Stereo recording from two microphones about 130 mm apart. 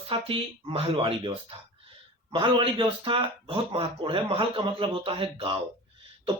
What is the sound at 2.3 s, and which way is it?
Speech, 40° right (ahead or behind).